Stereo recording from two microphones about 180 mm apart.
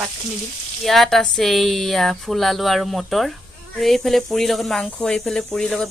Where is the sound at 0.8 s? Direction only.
Centre (ahead or behind).